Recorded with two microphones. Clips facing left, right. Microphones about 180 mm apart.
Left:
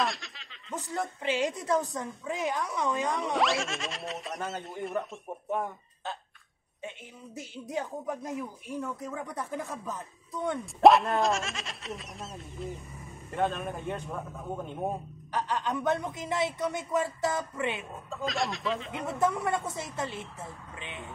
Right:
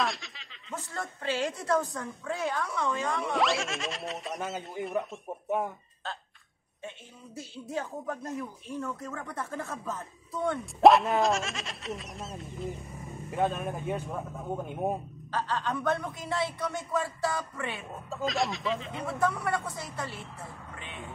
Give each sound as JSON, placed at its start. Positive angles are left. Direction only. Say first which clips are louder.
{"t": 0.0, "sound": "snicker", "louder": "even", "side_deg": 0}
{"t": 0.9, "sound": "speech", "louder": "left 2 dB", "side_deg": 15}
{"t": 3.3, "sound": "speech", "louder": "right 1 dB", "side_deg": 0}
{"t": 7.3, "sound": "speech", "louder": "left 1 dB", "side_deg": 15}
{"t": 10.6, "sound": "speech", "louder": "even", "side_deg": 0}
{"t": 15.3, "sound": "a man's voice", "louder": "left 1 dB", "side_deg": 15}
{"t": 18.1, "sound": "speech", "louder": "right 2 dB", "side_deg": 0}
{"t": 19.1, "sound": "a man's voice", "louder": "left 1 dB", "side_deg": 20}